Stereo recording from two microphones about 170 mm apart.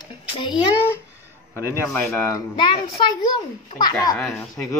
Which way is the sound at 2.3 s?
25° left (ahead or behind).